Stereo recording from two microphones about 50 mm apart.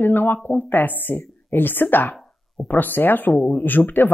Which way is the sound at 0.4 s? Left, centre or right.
Left.